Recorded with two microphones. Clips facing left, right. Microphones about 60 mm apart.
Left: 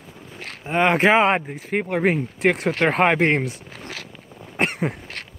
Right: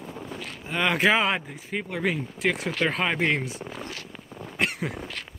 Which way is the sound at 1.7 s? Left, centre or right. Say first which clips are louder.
Left 7 dB; left.